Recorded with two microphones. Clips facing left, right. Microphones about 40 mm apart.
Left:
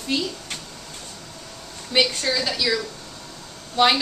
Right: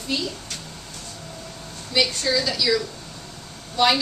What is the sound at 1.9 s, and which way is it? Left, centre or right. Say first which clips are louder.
A woman's voice: left 1 dB; centre.